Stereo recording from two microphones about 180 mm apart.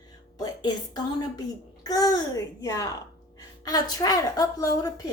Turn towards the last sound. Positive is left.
turn(degrees=20)  # may be behind; listen again after turning